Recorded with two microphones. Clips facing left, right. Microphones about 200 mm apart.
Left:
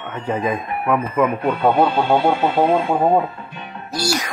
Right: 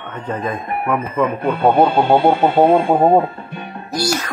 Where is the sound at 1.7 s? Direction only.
50° right (ahead or behind).